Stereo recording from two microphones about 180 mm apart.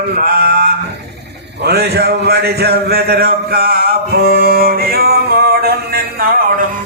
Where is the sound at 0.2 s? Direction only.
55° right (ahead or behind).